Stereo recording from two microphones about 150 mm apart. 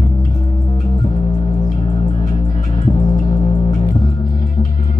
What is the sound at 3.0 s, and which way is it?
Music, 25° left (ahead or behind).